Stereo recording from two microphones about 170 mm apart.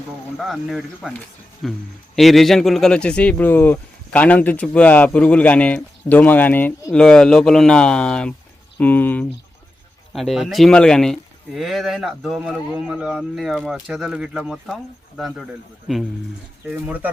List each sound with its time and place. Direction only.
0.3 s speech: centre (ahead or behind)
15.9 s speech: centre (ahead or behind)